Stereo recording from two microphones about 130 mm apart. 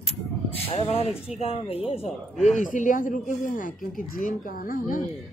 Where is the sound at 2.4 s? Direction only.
75° left (ahead or behind).